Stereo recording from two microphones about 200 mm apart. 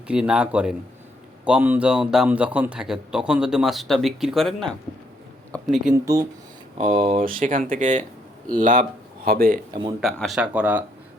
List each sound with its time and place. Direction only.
0.1 s a man's voice: 5° right (ahead or behind)
5.5 s a sound: centre (ahead or behind)
6.1 s speech: 15° right (ahead or behind)
6.9 s speech: 25° right (ahead or behind)
7.3 s speech: 40° right (ahead or behind)
10.0 s a man's voice: centre (ahead or behind)